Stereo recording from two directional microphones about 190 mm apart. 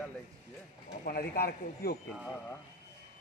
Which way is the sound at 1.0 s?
55° left (ahead or behind).